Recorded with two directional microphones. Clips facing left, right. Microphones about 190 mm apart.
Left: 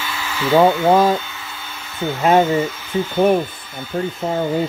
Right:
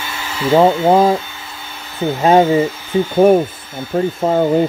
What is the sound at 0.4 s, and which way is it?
Speech, 25° right (ahead or behind).